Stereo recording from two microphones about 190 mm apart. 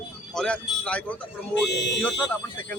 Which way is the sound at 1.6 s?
65° left (ahead or behind).